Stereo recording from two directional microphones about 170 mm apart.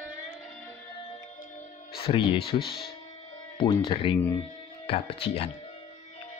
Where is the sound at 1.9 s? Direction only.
35° left (ahead or behind).